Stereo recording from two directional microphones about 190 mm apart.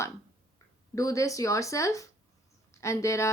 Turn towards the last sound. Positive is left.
turn(degrees=15)  # may be behind; listen again after turning